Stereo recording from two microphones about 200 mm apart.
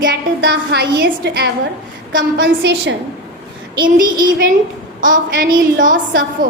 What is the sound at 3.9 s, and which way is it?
A woman's voice, 45° right (ahead or behind).